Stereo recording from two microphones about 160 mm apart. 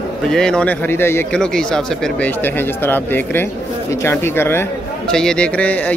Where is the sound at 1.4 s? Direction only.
5° left (ahead or behind).